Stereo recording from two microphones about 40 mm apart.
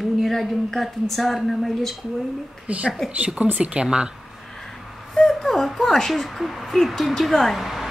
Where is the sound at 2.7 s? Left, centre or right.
Right.